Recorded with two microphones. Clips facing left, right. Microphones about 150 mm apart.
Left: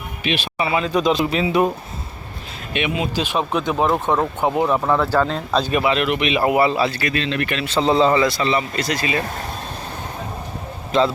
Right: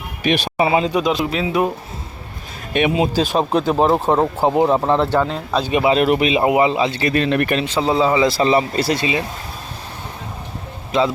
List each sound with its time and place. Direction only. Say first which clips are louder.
0.6 s a man's voice: right 5 dB; 25° right (ahead or behind)
0.9 s speech: even; 5° right (ahead or behind)
2.9 s speech: right 5 dB; 35° right (ahead or behind)
5.2 s a man's voice: even; 10° right (ahead or behind)
5.8 s speech: right 4 dB; 35° right (ahead or behind)
6.4 s a man's voice: right 1 dB; 20° right (ahead or behind)
7.3 s speech: right 5 dB; 45° right (ahead or behind)
7.6 s a man's voice: left 1 dB; 10° right (ahead or behind)
8.4 s speech: right 5 dB; 35° right (ahead or behind)